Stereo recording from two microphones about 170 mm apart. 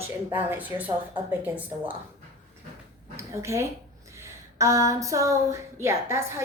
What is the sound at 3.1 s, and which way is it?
A woman's voice, 15° right (ahead or behind).